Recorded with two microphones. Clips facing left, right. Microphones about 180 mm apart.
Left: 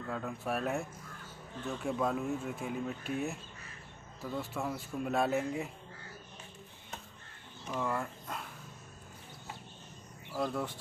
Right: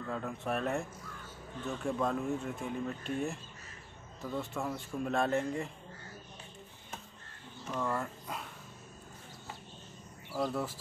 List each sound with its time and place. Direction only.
0.1 s speech: 5° left (ahead or behind)
7.7 s speech: centre (ahead or behind)
10.3 s speech: 5° right (ahead or behind)